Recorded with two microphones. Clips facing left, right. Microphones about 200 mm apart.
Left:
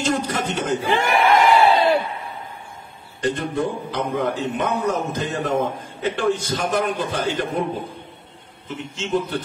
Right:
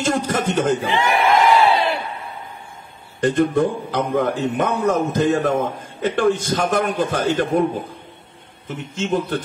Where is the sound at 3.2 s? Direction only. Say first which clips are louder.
Right 6 dB; 50° right (ahead or behind).